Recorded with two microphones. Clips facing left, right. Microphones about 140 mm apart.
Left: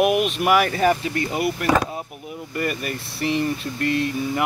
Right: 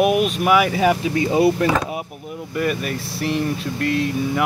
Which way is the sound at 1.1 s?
20° right (ahead or behind).